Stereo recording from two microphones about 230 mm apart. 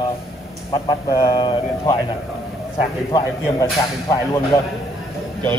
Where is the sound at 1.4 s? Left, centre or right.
Centre.